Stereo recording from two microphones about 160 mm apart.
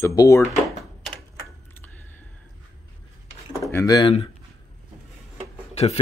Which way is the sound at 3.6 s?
20° left (ahead or behind).